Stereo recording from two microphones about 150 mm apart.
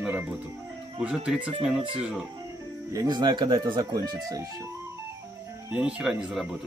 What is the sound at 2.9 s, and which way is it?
Speech, 25° right (ahead or behind).